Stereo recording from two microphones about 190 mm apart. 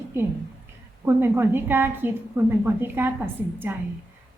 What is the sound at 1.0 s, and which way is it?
A woman's voice, 10° right (ahead or behind).